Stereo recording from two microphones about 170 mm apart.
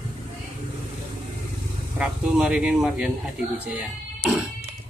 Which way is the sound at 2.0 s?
5° right (ahead or behind).